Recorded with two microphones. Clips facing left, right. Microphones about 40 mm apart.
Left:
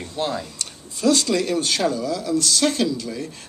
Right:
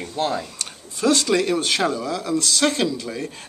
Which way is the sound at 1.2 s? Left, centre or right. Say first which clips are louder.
Right 2 dB; right.